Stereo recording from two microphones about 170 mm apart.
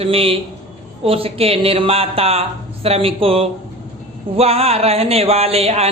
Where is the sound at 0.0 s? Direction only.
35° right (ahead or behind).